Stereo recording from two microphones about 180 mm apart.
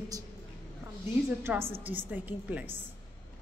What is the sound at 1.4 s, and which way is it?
A woman's voice, 15° right (ahead or behind).